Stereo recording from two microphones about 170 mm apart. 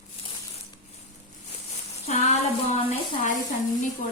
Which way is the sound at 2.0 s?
40° left (ahead or behind).